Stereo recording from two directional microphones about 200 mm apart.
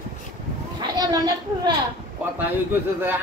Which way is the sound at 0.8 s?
20° right (ahead or behind).